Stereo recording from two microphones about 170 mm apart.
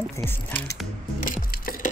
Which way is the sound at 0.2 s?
10° left (ahead or behind).